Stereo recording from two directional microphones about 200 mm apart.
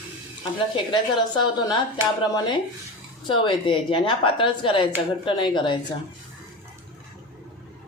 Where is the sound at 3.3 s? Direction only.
25° left (ahead or behind).